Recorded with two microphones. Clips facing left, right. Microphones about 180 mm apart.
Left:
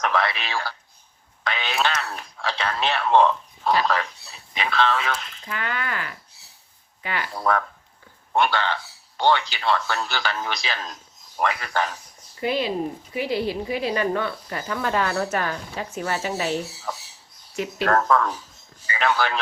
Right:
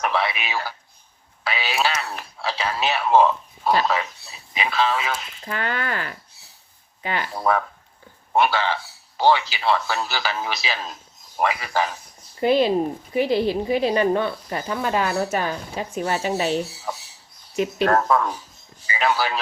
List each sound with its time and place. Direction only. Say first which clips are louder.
0.0 s a man's voice: even; 10° right (ahead or behind)
5.4 s speech: right 3 dB; 35° right (ahead or behind)
7.0 s speech: right 3 dB; 25° right (ahead or behind)
7.3 s a man's voice: right 1 dB; 5° right (ahead or behind)
12.4 s a man's voice: right 6 dB; 30° right (ahead or behind); by 19.4 s 5° right (ahead or behind)